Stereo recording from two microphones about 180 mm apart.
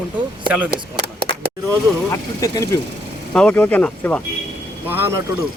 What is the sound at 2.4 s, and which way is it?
Speech, 20° left (ahead or behind).